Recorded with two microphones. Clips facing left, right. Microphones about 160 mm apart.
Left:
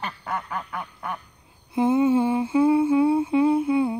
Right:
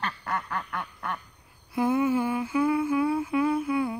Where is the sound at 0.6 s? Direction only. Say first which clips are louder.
Left 1 dB; 5° left (ahead or behind).